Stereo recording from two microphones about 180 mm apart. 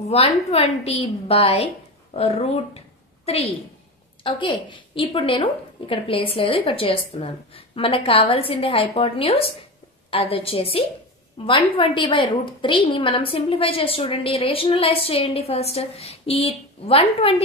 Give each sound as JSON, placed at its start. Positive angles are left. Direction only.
{"t": 0.1, "sound": "a woman's voice", "side_deg": 35}